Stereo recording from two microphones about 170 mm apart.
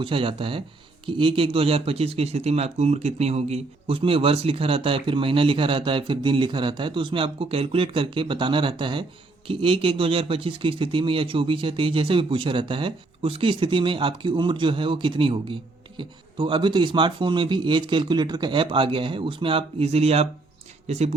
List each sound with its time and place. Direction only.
0.0 s speech: 30° right (ahead or behind)